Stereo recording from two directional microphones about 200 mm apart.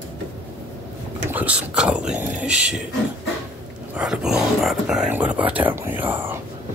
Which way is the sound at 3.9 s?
5° right (ahead or behind).